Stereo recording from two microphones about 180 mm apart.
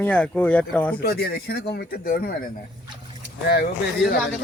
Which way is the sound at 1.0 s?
60° left (ahead or behind).